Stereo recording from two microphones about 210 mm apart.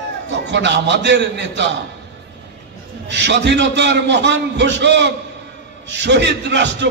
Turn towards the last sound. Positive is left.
turn(degrees=-55)  # may be behind; listen again after turning